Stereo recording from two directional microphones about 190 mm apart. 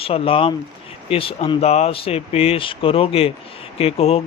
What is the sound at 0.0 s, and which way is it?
A man's voice, 30° left (ahead or behind).